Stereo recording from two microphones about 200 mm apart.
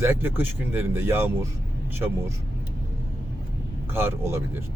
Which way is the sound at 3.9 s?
10° right (ahead or behind).